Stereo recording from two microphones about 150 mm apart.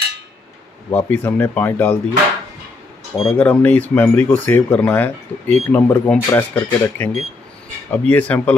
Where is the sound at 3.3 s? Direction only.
10° left (ahead or behind).